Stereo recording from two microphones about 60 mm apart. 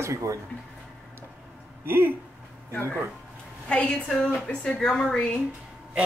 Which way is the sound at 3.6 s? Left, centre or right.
Centre.